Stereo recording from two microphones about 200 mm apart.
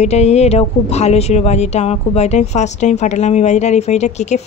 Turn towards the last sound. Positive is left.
turn(degrees=35)  # may be behind; listen again after turning